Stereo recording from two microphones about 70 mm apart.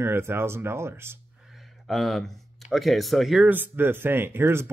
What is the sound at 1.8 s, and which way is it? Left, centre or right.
Speech, centre.